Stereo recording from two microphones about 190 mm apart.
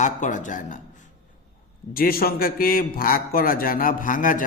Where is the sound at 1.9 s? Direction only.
50° left (ahead or behind).